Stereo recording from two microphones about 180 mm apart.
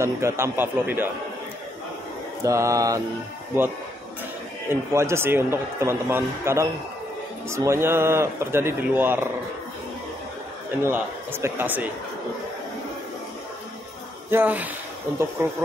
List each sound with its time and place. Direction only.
0.0 s a man's voice: 15° right (ahead or behind)
2.4 s a man's voice: 15° right (ahead or behind)
4.6 s a man's voice: 15° right (ahead or behind)
10.8 s a man's voice: 15° right (ahead or behind)
14.3 s a man's voice: 10° right (ahead or behind)